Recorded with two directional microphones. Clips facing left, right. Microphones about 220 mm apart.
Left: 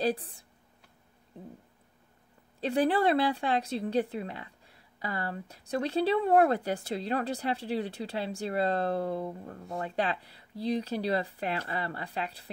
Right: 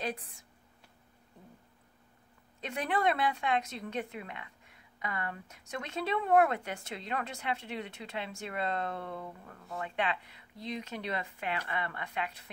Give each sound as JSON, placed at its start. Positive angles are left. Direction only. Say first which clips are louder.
{"t": 0.0, "sound": "speech", "louder": "left 8 dB", "side_deg": 35}
{"t": 2.6, "sound": "speech", "louder": "left 6 dB", "side_deg": 35}